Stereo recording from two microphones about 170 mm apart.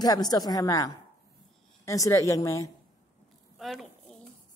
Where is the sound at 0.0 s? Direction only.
25° left (ahead or behind).